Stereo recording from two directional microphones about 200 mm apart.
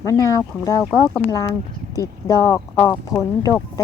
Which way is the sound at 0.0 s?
15° left (ahead or behind).